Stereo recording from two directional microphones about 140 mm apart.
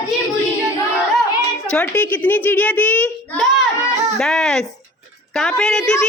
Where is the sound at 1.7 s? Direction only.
10° left (ahead or behind).